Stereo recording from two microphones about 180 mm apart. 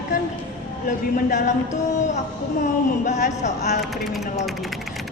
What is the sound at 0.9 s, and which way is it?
Speech, 45° left (ahead or behind).